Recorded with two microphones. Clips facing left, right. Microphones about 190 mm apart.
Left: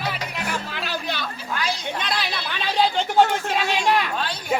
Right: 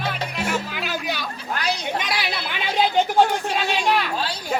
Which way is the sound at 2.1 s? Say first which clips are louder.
Right 1 dB; 15° right (ahead or behind).